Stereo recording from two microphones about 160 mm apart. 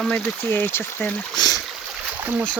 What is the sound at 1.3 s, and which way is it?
Boat, 25° left (ahead or behind).